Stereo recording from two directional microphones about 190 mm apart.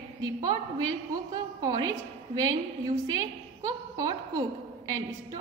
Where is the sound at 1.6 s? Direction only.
20° right (ahead or behind).